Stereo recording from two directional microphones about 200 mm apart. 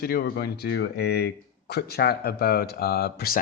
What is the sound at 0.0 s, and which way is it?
Speech, 50° left (ahead or behind).